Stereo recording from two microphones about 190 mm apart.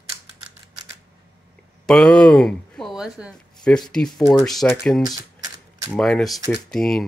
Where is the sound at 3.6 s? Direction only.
5° left (ahead or behind).